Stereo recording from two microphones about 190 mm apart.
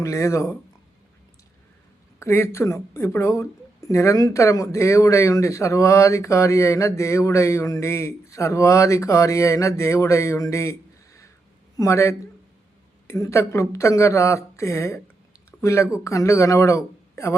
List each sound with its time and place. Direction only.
0.0 s speech: 15° left (ahead or behind)
2.1 s speech: 15° left (ahead or behind)